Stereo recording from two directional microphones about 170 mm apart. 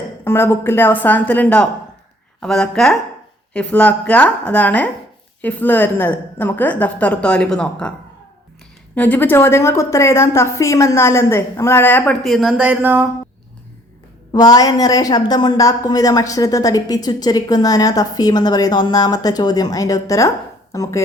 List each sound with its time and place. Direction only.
0.3 s a woman's voice: 15° left (ahead or behind)
9.0 s a woman's voice: 10° left (ahead or behind)
12.2 s speech: centre (ahead or behind)
14.3 s a woman's voice: 20° left (ahead or behind)